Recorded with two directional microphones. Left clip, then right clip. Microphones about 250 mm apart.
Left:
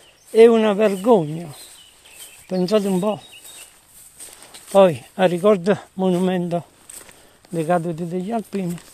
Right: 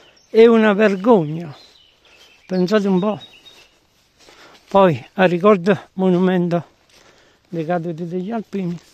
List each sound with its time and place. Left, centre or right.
0.3 s speech: right
4.6 s speech: right
7.5 s speech: right